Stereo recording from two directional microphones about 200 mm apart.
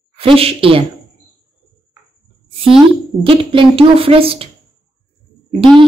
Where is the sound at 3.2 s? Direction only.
25° right (ahead or behind).